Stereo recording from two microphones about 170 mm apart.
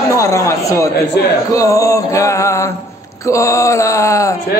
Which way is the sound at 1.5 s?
20° left (ahead or behind).